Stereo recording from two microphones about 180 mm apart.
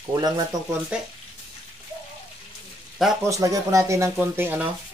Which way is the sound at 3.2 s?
20° right (ahead or behind).